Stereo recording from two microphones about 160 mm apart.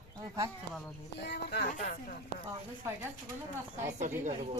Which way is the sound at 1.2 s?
90° left.